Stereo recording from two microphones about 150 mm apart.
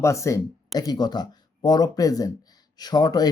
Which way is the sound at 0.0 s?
20° left (ahead or behind).